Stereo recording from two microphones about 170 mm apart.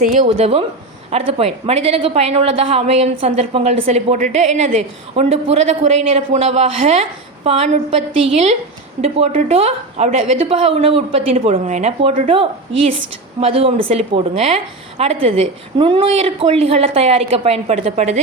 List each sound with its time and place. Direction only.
0.0 s a woman's voice: 50° right (ahead or behind)
13.4 s a woman's voice: 35° right (ahead or behind)